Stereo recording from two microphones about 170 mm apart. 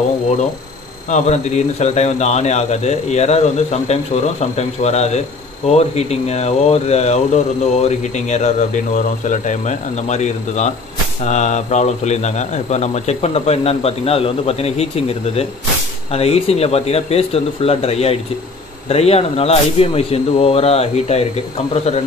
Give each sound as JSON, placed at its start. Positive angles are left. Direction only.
{"t": 1.1, "sound": "speech", "side_deg": 40}